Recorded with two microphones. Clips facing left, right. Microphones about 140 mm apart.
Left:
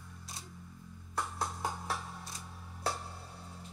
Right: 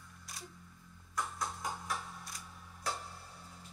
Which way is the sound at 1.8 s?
25° left (ahead or behind).